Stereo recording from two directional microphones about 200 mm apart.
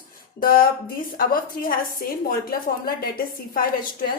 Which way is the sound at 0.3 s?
45° left (ahead or behind).